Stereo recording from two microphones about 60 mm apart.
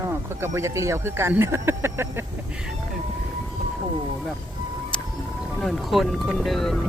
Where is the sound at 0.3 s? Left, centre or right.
Right.